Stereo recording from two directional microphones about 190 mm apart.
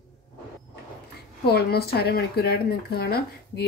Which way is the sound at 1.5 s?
55° left (ahead or behind).